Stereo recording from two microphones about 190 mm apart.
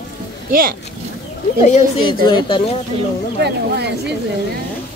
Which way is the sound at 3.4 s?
60° right (ahead or behind).